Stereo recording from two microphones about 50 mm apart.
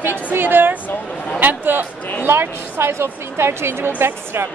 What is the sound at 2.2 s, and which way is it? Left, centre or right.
A woman's voice, right.